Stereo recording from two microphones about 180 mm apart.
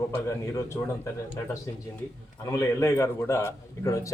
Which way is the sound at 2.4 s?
15° left (ahead or behind).